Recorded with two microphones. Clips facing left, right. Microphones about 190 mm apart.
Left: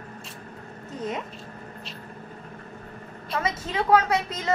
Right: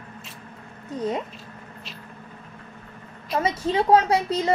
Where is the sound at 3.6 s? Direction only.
30° right (ahead or behind).